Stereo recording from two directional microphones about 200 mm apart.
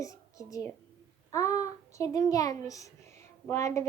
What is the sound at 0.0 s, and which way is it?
Whispering, 15° left (ahead or behind).